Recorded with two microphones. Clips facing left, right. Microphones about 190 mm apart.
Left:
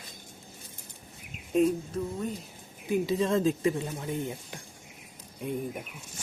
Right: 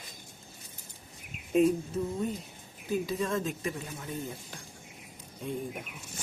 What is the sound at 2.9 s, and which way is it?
A man's voice, 25° left (ahead or behind).